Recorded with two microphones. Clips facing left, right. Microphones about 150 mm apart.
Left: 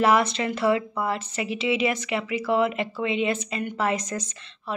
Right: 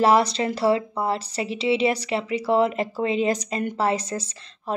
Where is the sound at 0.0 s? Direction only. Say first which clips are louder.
Right 2 dB; 35° right (ahead or behind).